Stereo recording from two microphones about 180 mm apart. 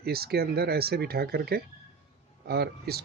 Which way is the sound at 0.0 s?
60° right (ahead or behind).